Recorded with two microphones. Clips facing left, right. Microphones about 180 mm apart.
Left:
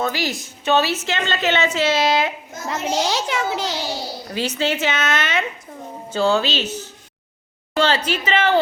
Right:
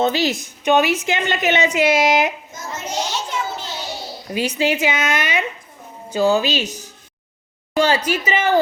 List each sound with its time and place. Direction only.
0.0 s a woman's voice: 20° right (ahead or behind)
2.5 s a child's voice: 75° left (ahead or behind); by 3.8 s 90° left
4.3 s a woman's voice: 10° right (ahead or behind)
7.7 s a woman's voice: 10° right (ahead or behind)